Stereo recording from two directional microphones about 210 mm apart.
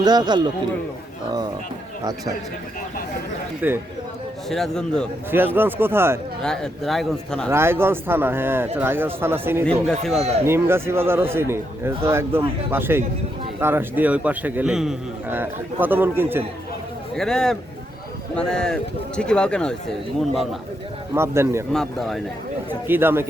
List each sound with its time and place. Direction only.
0.0 s a man's voice: 20° right (ahead or behind)
3.6 s a man's voice: 10° right (ahead or behind)
4.4 s speech: centre (ahead or behind)
5.3 s a man's voice: 10° right (ahead or behind)
6.4 s speech: 5° left (ahead or behind)
7.5 s a man's voice: 10° right (ahead or behind)
9.8 s speech: centre (ahead or behind)
10.4 s a man's voice: 10° right (ahead or behind)
17.2 s speech: 5° left (ahead or behind)
21.2 s a man's voice: 10° right (ahead or behind)
21.7 s speech: centre (ahead or behind)
22.9 s a man's voice: 10° right (ahead or behind)